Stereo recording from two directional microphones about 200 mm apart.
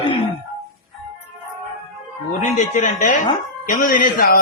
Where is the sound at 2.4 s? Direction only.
40° left (ahead or behind).